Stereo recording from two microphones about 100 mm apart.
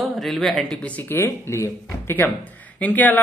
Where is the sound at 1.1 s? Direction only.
30° left (ahead or behind).